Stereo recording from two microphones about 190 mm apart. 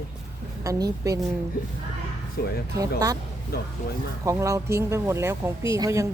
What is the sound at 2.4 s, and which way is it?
Speech, 55° left (ahead or behind).